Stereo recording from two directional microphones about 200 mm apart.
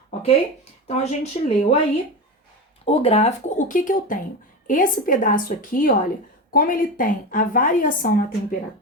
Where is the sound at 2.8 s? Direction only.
30° left (ahead or behind).